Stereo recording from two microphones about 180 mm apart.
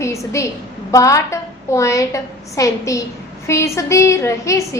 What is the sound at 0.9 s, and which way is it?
A woman's voice, 15° left (ahead or behind).